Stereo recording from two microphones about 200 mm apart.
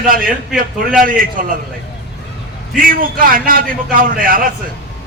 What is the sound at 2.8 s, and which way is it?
A man's voice, 45° right (ahead or behind).